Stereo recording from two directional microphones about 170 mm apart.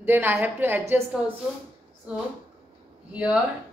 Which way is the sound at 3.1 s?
5° right (ahead or behind).